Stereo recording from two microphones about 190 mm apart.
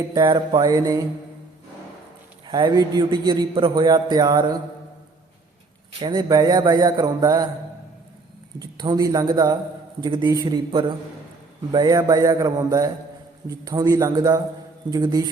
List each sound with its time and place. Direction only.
0.1 s a man's voice: 25° right (ahead or behind)
2.5 s a man's voice: 20° right (ahead or behind)
6.0 s a man's voice: 20° right (ahead or behind)
8.5 s a man's voice: 20° right (ahead or behind)